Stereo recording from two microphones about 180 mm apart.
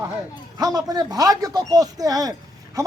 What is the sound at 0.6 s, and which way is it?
Speech, 20° right (ahead or behind).